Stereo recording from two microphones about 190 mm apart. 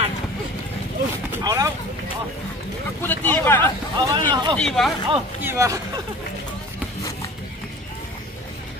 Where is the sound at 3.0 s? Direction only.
10° left (ahead or behind).